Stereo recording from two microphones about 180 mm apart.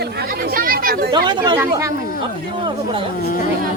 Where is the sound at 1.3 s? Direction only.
25° right (ahead or behind).